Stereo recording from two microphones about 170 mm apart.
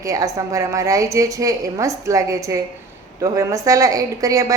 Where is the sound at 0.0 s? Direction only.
20° right (ahead or behind).